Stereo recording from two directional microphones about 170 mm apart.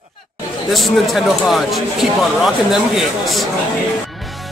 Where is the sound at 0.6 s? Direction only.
Centre (ahead or behind).